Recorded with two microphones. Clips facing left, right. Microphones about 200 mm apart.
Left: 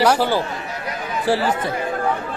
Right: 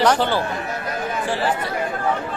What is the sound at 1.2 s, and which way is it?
Speech, 35° left (ahead or behind).